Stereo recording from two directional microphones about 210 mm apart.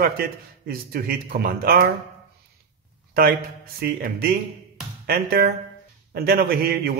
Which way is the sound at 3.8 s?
45° right (ahead or behind).